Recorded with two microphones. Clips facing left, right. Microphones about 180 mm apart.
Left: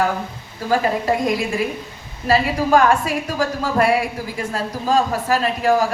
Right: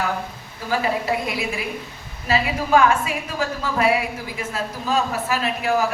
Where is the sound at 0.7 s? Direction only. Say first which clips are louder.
Left 4 dB; 45° left (ahead or behind).